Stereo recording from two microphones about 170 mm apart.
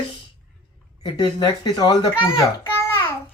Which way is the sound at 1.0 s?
25° left (ahead or behind).